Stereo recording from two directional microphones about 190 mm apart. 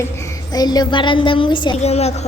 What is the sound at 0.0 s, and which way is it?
A woman's voice, 15° left (ahead or behind).